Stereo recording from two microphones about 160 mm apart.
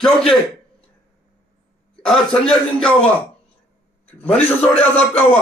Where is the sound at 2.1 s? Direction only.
5° left (ahead or behind).